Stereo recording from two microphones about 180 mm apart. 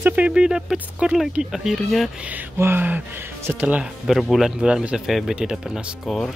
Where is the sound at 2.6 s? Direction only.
10° right (ahead or behind).